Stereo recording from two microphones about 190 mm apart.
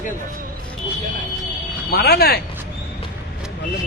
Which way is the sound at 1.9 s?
55° left (ahead or behind).